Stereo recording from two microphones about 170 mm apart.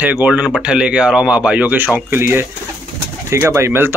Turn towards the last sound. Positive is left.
turn(degrees=-15)  # may be behind; listen again after turning